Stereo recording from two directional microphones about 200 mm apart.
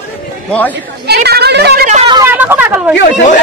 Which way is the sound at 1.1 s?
55° right (ahead or behind).